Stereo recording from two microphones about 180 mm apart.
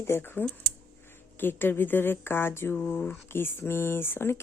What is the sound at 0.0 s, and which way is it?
Speech, 10° left (ahead or behind).